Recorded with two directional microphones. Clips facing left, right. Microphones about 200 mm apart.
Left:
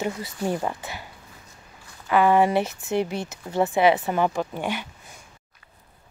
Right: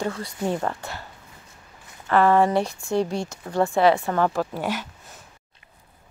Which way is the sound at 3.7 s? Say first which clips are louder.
Right 1 dB; 20° left (ahead or behind).